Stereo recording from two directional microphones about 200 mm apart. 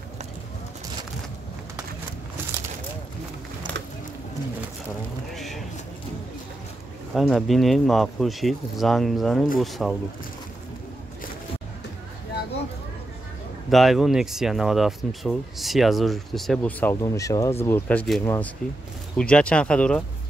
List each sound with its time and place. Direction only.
5.3 s a sound: centre (ahead or behind)
7.2 s speech: centre (ahead or behind)
13.7 s speech: centre (ahead or behind)